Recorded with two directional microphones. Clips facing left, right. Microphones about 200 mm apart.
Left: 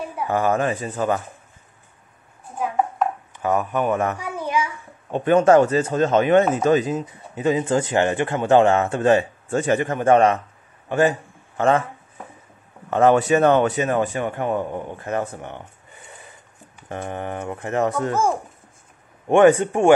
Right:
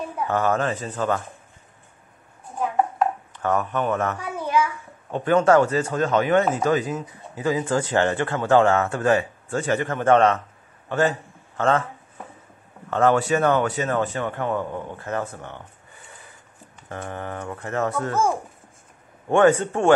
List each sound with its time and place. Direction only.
0.2 s speech: 10° left (ahead or behind)
3.3 s a child's voice: 10° left (ahead or behind)
12.9 s speech: 20° left (ahead or behind)
16.9 s speech: 20° left (ahead or behind)